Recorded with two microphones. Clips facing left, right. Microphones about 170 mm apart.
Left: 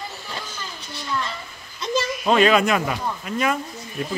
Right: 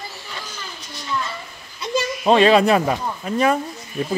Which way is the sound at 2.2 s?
30° right (ahead or behind).